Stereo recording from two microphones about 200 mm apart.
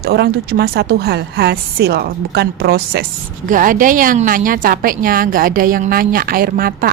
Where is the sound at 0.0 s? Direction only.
55° right (ahead or behind).